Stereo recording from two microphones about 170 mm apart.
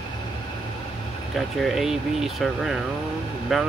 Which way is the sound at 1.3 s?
Centre (ahead or behind).